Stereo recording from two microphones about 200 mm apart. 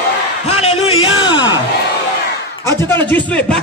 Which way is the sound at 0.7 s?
30° left (ahead or behind).